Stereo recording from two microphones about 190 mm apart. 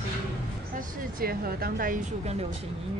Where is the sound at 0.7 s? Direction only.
50° right (ahead or behind).